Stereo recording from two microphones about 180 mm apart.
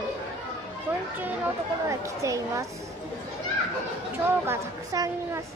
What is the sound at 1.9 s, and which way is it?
Speech, 15° right (ahead or behind).